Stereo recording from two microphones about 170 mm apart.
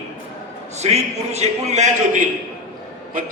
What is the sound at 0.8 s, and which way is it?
A man's voice, 40° right (ahead or behind).